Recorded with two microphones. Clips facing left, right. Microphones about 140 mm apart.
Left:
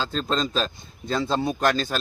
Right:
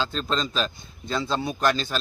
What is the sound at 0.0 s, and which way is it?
A man's voice, 40° left (ahead or behind).